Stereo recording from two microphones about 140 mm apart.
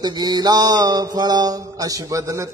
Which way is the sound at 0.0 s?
30° right (ahead or behind).